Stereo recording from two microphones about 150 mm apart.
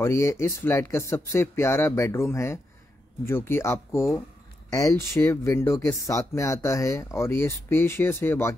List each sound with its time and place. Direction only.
0.0 s speech: 20° left (ahead or behind)